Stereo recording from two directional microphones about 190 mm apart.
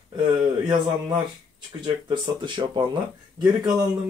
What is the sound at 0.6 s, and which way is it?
Speech, 25° right (ahead or behind).